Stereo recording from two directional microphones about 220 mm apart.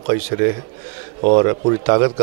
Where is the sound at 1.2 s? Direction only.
30° right (ahead or behind).